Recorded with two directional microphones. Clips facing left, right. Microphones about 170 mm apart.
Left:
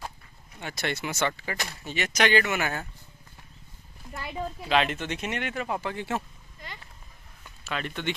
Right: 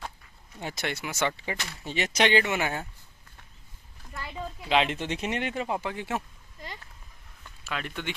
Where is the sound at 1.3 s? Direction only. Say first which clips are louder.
Left 1 dB; 25° right (ahead or behind).